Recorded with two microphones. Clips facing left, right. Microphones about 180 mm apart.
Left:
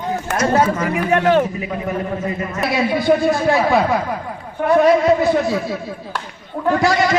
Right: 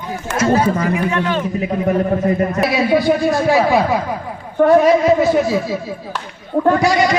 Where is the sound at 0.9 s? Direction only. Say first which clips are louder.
Left 3 dB; 60° left (ahead or behind).